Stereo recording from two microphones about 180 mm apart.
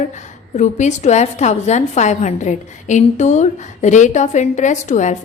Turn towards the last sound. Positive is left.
turn(degrees=40)  # may be behind; listen again after turning